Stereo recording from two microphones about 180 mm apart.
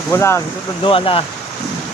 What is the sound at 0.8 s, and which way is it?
Speech, 30° left (ahead or behind).